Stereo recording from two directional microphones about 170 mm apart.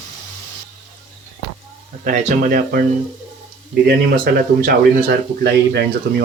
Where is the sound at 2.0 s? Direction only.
50° right (ahead or behind).